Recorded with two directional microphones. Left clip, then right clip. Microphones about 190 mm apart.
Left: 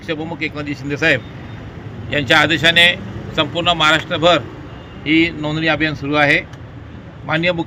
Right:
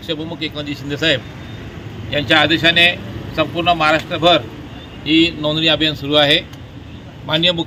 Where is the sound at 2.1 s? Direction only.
45° left (ahead or behind).